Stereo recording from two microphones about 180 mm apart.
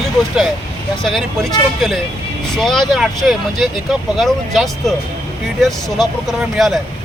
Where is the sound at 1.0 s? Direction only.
Centre (ahead or behind).